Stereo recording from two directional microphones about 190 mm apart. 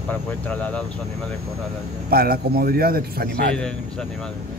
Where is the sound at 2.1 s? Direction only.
50° right (ahead or behind).